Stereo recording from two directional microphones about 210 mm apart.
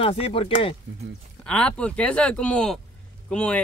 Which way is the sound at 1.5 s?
5° left (ahead or behind).